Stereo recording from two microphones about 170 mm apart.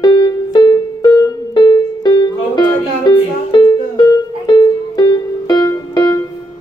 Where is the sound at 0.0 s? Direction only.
25° left (ahead or behind).